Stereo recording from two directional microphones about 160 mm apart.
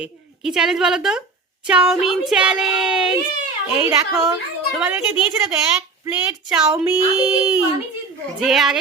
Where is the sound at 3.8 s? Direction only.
15° right (ahead or behind).